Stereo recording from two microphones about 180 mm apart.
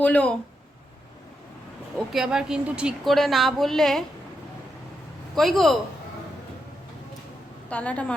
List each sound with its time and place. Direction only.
0.0 s a woman's voice: 5° left (ahead or behind)
2.0 s speech: centre (ahead or behind)
5.3 s speech: centre (ahead or behind)
7.7 s a woman's voice: 5° left (ahead or behind)